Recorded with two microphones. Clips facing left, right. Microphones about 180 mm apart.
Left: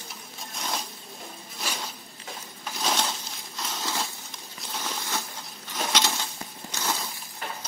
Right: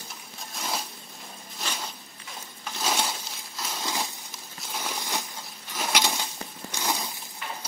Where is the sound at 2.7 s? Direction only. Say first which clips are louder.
Even; 10° right (ahead or behind).